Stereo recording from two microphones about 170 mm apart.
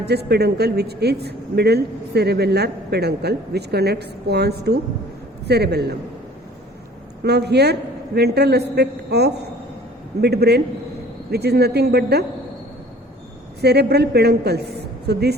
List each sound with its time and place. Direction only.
0.0 s speech: 75° right (ahead or behind)
7.2 s speech: 75° right (ahead or behind)
13.6 s speech: 75° right (ahead or behind)
14.8 s a sound: 75° right (ahead or behind)